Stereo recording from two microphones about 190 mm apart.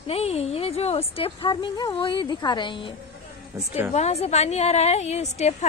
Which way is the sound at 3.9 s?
35° left (ahead or behind).